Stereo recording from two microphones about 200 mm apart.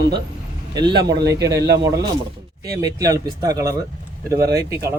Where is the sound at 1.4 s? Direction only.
60° right (ahead or behind).